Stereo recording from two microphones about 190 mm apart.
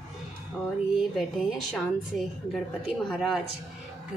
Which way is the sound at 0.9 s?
Centre (ahead or behind).